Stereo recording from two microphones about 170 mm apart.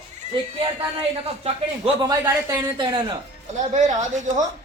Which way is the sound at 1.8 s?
25° right (ahead or behind).